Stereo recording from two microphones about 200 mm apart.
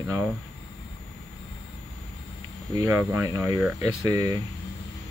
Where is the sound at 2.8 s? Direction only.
15° right (ahead or behind).